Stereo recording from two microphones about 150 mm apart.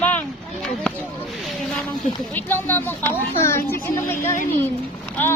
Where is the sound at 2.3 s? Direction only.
10° left (ahead or behind).